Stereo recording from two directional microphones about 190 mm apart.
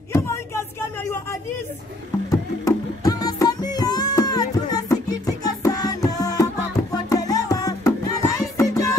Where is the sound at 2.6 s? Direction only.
20° left (ahead or behind).